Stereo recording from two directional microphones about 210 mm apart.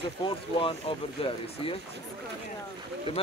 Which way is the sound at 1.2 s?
25° left (ahead or behind).